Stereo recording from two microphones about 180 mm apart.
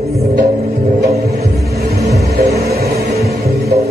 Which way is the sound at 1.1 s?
60° right (ahead or behind).